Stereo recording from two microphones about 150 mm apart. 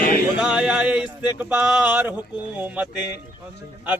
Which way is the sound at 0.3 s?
5° right (ahead or behind).